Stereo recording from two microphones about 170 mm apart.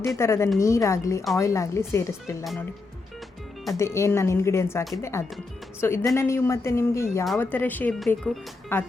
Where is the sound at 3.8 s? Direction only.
15° left (ahead or behind); by 8.4 s centre (ahead or behind).